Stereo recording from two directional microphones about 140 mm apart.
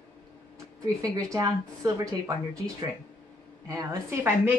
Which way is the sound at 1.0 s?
25° right (ahead or behind).